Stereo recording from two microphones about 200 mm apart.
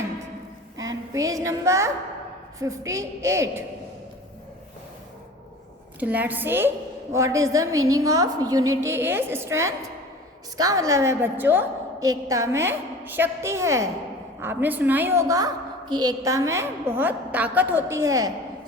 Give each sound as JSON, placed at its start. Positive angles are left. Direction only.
{"t": 0.8, "sound": "a woman's voice", "side_deg": -15}
{"t": 6.0, "sound": "a woman's voice", "side_deg": -10}